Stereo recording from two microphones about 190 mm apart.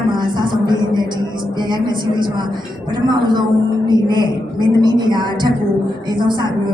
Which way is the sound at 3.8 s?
25° right (ahead or behind).